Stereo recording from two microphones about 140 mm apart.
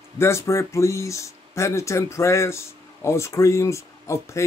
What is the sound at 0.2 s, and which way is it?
Speech, 20° left (ahead or behind).